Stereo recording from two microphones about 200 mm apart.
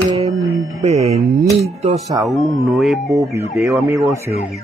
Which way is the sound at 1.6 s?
30° right (ahead or behind).